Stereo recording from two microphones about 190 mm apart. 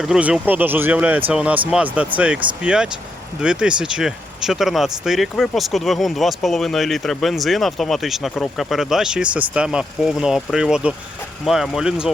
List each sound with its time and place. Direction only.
0.0 s speech: 5° right (ahead or behind)